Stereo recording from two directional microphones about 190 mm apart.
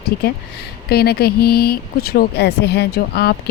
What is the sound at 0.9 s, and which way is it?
Speech, 55° left (ahead or behind).